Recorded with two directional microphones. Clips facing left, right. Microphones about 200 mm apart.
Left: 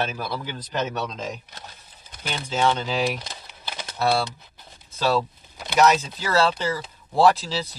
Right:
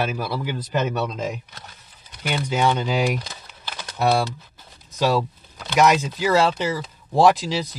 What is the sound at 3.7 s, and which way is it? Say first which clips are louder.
Typing: even; 20° left (ahead or behind).